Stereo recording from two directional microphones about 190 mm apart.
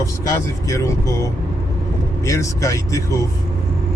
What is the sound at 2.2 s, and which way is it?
Speech, 15° left (ahead or behind).